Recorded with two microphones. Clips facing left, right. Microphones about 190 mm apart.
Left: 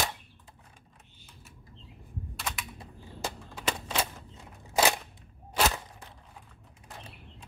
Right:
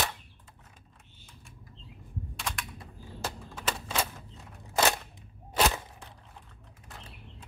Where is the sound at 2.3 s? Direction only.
5° left (ahead or behind).